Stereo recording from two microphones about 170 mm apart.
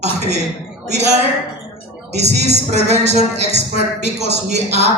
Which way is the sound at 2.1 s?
40° right (ahead or behind).